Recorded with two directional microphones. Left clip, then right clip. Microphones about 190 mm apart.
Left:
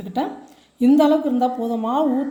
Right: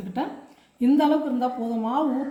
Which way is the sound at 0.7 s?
45° left (ahead or behind).